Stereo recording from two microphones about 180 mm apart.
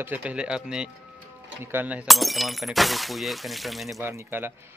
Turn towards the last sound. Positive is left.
turn(degrees=-10)  # may be behind; listen again after turning